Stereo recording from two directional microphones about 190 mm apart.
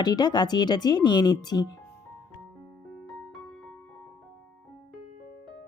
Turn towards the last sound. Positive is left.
turn(degrees=0)  # may be behind; listen again after turning